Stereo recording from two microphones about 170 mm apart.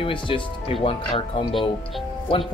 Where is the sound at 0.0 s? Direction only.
30° left (ahead or behind).